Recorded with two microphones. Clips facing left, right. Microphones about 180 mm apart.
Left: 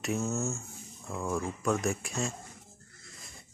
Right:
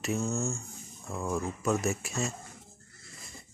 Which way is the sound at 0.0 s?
Centre (ahead or behind).